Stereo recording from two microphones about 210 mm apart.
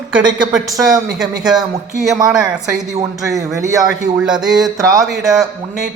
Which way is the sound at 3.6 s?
15° right (ahead or behind).